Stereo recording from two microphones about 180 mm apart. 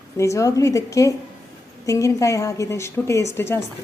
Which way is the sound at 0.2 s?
15° left (ahead or behind).